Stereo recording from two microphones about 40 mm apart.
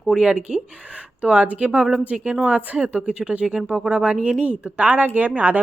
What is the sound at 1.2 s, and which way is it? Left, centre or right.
Speech, right.